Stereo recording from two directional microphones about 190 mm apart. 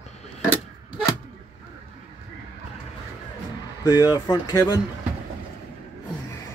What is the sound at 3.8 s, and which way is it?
Speech, 20° left (ahead or behind).